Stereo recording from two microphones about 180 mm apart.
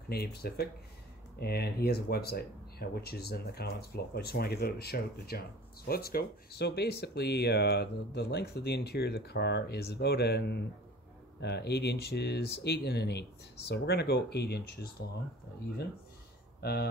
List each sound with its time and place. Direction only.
0.1 s speech: 60° left (ahead or behind)
16.6 s speech: 65° left (ahead or behind)